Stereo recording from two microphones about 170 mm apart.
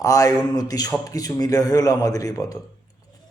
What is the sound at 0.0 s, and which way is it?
Speech, 20° left (ahead or behind).